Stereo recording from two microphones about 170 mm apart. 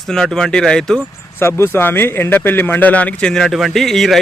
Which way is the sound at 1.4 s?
15° left (ahead or behind).